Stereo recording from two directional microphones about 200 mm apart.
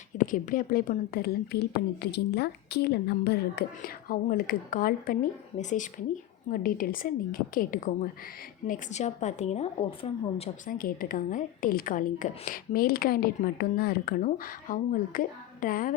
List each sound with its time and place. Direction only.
0.2 s a woman's voice: 40° left (ahead or behind)
10.7 s a woman's voice: 45° left (ahead or behind)